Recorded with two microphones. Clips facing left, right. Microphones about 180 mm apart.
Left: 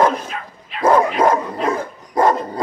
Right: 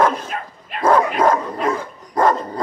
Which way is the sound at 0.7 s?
45° right (ahead or behind).